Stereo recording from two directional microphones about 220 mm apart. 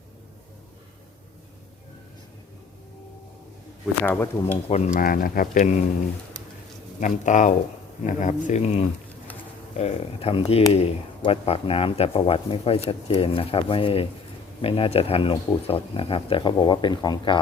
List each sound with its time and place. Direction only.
4.0 s speech: 5° left (ahead or behind)
4.9 s speech: 40° left (ahead or behind)
7.0 s speech: 35° left (ahead or behind); by 17.4 s 20° left (ahead or behind)